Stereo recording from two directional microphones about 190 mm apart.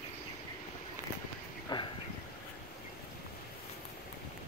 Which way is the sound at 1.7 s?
20° left (ahead or behind).